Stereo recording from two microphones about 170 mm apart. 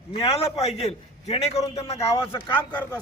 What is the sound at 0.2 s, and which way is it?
A man's voice, 35° left (ahead or behind).